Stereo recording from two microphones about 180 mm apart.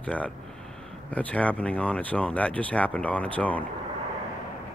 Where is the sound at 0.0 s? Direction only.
5° left (ahead or behind).